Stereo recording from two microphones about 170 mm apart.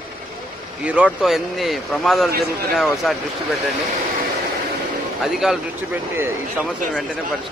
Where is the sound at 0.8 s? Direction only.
5° right (ahead or behind).